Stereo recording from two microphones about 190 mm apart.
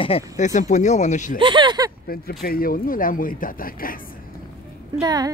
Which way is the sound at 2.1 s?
50° left (ahead or behind).